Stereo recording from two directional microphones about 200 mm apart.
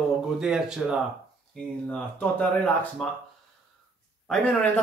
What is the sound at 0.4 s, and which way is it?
Speech, 5° right (ahead or behind).